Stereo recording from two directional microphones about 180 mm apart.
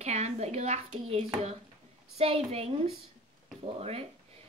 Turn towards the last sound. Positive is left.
turn(degrees=-35)  # may be behind; listen again after turning